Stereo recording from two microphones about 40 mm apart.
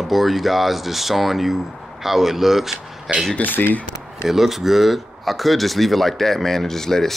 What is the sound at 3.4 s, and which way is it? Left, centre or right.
Speech, left.